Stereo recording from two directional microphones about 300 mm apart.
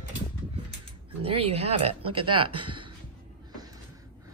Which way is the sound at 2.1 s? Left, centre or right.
Centre.